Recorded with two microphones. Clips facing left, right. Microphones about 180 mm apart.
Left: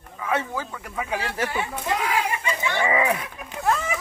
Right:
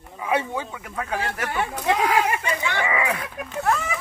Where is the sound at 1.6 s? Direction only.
55° right (ahead or behind).